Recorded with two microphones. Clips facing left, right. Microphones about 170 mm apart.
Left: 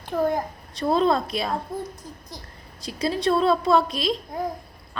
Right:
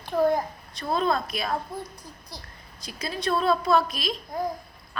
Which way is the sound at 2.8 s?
30° left (ahead or behind).